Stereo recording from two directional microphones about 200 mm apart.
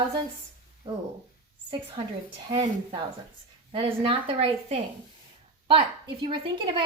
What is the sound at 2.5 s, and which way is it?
A woman's voice, 20° right (ahead or behind).